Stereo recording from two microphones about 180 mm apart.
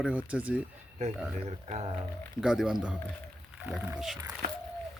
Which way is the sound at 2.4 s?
5° right (ahead or behind).